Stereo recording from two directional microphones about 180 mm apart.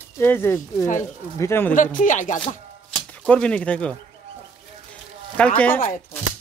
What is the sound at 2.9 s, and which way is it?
Speech, 5° left (ahead or behind).